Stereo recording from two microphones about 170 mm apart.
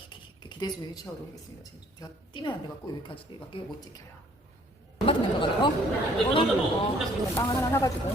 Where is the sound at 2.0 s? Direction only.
25° left (ahead or behind).